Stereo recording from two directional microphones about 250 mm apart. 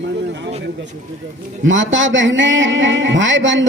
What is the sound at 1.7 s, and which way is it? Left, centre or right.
A man's voice, right.